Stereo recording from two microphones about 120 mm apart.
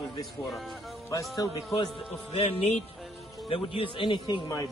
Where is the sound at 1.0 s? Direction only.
30° left (ahead or behind).